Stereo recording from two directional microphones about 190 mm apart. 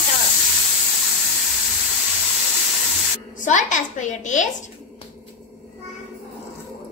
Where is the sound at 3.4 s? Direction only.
40° left (ahead or behind).